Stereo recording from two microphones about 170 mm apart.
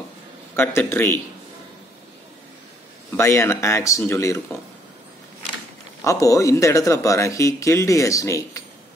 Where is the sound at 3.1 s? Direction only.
15° left (ahead or behind).